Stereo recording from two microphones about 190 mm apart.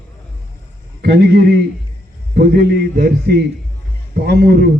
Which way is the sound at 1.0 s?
55° right (ahead or behind).